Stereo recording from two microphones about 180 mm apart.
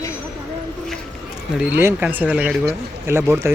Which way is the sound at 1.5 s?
10° right (ahead or behind).